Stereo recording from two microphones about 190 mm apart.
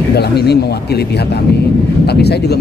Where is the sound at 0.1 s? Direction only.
60° left (ahead or behind).